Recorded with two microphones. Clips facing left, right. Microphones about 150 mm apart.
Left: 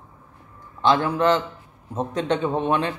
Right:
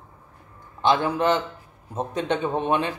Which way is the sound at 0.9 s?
15° right (ahead or behind).